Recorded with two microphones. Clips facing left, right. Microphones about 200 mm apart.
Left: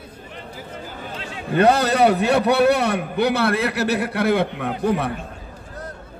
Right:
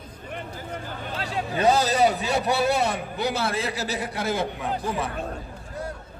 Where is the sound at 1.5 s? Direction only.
65° left (ahead or behind).